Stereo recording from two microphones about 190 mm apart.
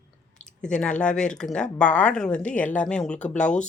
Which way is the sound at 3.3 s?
40° left (ahead or behind).